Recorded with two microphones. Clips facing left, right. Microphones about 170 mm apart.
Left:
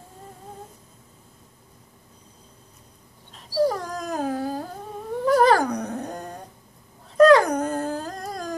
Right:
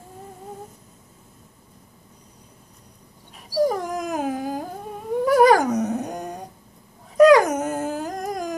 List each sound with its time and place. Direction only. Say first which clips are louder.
3.3 s dog: right 1 dB; 15° right (ahead or behind)